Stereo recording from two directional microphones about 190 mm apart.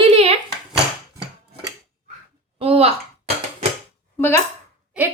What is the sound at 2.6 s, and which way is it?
Speech, 30° right (ahead or behind).